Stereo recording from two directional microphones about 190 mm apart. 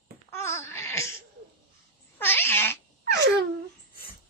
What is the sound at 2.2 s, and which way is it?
Cat, 10° left (ahead or behind).